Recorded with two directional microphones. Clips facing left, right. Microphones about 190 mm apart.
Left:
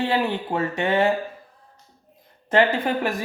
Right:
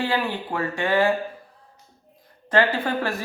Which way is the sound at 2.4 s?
20° left (ahead or behind).